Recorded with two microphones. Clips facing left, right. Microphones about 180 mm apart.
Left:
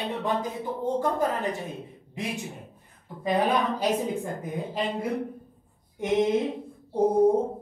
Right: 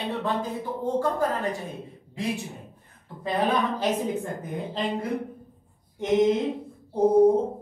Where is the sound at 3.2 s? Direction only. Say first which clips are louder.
Left 1 dB; 15° left (ahead or behind).